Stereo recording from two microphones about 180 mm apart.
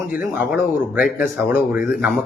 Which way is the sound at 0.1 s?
10° right (ahead or behind).